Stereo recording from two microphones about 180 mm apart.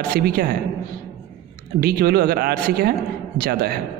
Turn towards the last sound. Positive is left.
turn(degrees=-55)  # may be behind; listen again after turning